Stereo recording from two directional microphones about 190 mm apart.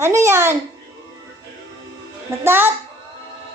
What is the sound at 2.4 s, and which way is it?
Speech, 10° right (ahead or behind).